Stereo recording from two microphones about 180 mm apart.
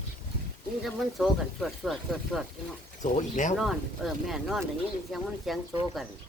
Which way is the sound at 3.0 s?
45° left (ahead or behind).